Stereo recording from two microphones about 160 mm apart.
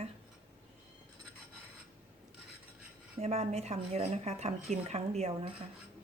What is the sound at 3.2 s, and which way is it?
Speech, 40° right (ahead or behind).